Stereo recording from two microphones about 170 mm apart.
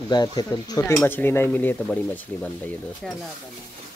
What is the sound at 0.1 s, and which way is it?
Speech, 25° left (ahead or behind).